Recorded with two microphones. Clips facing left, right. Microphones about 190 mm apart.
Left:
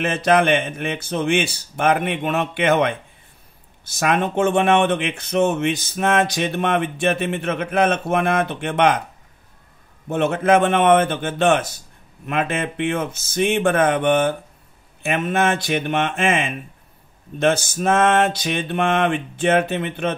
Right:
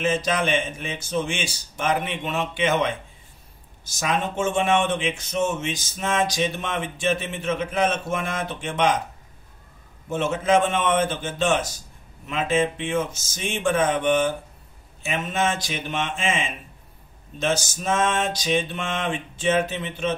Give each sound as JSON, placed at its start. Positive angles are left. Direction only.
{"t": 0.0, "sound": "speech", "side_deg": 60}
{"t": 10.0, "sound": "speech", "side_deg": 60}